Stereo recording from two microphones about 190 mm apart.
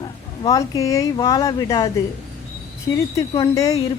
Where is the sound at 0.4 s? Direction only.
15° left (ahead or behind).